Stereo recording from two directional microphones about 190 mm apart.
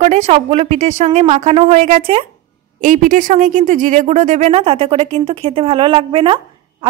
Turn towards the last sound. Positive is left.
turn(degrees=-30)  # may be behind; listen again after turning